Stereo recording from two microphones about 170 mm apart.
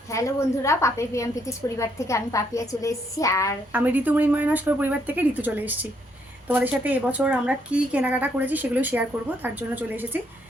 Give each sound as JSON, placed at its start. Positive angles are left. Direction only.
{"t": 0.1, "sound": "a woman's voice", "side_deg": 20}
{"t": 3.7, "sound": "a woman's voice", "side_deg": -10}